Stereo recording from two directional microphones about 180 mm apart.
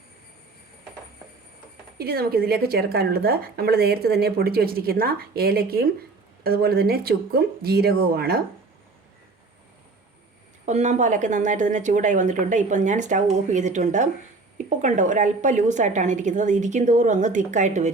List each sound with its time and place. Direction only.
2.0 s a woman's voice: 60° right (ahead or behind)
10.7 s a woman's voice: 40° right (ahead or behind)